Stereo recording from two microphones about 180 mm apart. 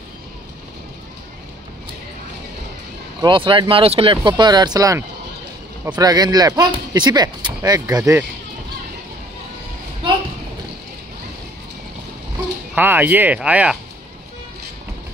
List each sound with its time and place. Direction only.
3.2 s speech: 25° right (ahead or behind)
12.7 s speech: 10° right (ahead or behind)